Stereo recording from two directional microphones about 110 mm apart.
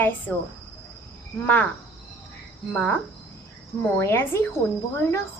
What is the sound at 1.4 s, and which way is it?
Cricket, 15° left (ahead or behind).